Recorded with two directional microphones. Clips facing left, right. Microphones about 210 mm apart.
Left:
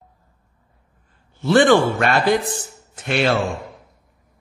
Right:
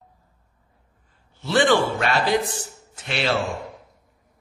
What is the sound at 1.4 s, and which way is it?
Speech, 50° left (ahead or behind).